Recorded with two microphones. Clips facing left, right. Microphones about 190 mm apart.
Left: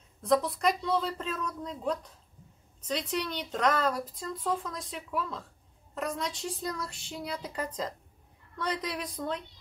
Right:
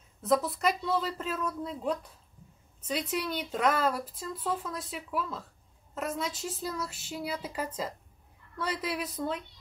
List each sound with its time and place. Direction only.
0.2 s speech: 5° right (ahead or behind)